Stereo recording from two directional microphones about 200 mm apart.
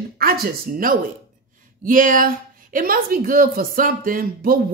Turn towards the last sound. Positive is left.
turn(degrees=-45)  # may be behind; listen again after turning